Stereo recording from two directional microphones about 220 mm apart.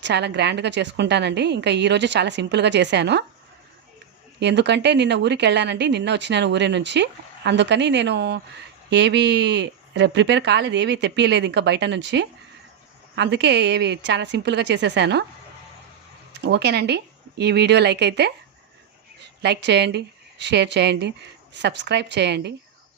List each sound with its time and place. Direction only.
0.0 s speech: 50° right (ahead or behind)
4.4 s speech: 50° right (ahead or behind)
16.3 s speech: 50° right (ahead or behind)
19.4 s speech: 50° right (ahead or behind)